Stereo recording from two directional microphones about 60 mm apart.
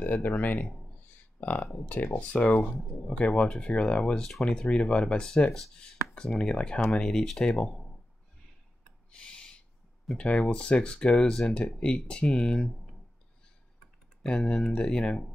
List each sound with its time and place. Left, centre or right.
0.0 s speech: left
5.5 s speech: centre
9.1 s owl: centre
10.1 s speech: centre
14.2 s speech: centre